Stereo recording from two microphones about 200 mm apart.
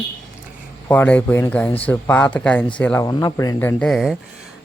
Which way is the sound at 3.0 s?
20° left (ahead or behind).